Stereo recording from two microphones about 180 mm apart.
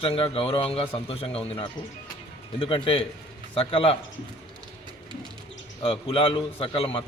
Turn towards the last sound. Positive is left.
turn(degrees=30)  # may be behind; listen again after turning